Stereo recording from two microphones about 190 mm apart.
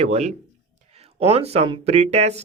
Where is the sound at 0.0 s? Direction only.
35° right (ahead or behind).